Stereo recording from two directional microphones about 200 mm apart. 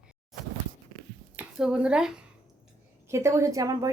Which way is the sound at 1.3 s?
5° right (ahead or behind).